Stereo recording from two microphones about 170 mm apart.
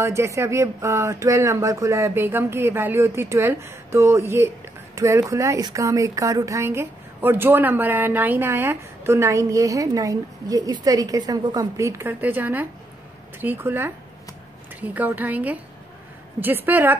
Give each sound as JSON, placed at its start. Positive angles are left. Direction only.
{"t": 0.0, "sound": "a woman's voice", "side_deg": -15}